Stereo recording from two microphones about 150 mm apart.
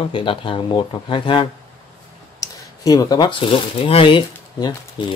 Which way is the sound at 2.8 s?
25° left (ahead or behind).